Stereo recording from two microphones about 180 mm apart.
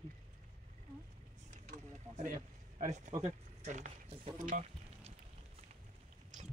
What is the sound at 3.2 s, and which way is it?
Speech, 40° right (ahead or behind).